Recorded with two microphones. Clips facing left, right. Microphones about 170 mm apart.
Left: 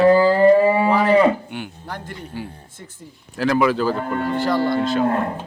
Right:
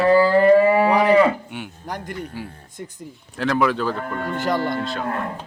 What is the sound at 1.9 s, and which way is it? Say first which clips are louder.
Speech: right 2 dB; 15° right (ahead or behind).